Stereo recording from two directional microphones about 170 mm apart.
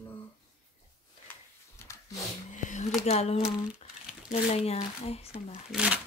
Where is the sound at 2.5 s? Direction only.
45° left (ahead or behind).